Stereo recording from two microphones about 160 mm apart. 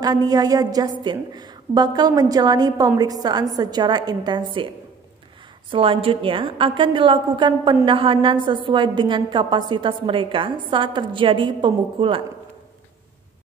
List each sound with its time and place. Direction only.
0.0 s a woman's voice: 25° right (ahead or behind)
5.7 s a woman's voice: 35° right (ahead or behind)